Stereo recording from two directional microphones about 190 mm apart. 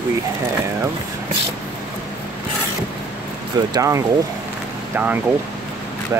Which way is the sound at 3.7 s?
15° right (ahead or behind).